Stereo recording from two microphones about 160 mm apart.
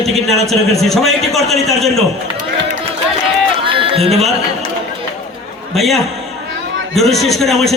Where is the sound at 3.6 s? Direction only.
35° right (ahead or behind).